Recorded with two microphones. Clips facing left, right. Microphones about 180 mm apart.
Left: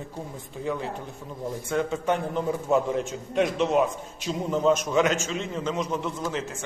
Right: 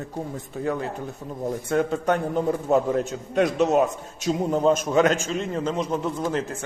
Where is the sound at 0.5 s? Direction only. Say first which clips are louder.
Right 3 dB; 45° right (ahead or behind).